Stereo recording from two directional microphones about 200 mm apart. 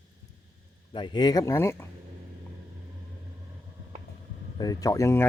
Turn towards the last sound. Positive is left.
turn(degrees=15)  # may be behind; listen again after turning